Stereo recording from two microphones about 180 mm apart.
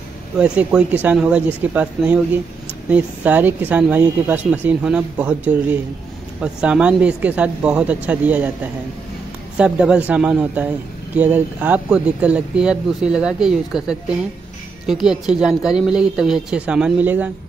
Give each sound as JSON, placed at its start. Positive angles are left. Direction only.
{"t": 0.4, "sound": "speech", "side_deg": -5}
{"t": 9.6, "sound": "speech", "side_deg": -5}